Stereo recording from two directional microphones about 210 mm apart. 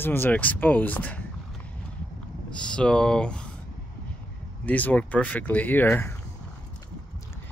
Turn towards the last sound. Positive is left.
turn(degrees=10)  # may be behind; listen again after turning